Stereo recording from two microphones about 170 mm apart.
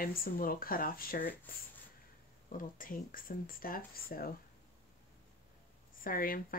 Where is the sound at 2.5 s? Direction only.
55° left (ahead or behind).